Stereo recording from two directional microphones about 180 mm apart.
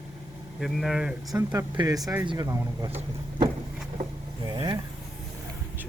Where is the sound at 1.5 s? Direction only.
20° right (ahead or behind).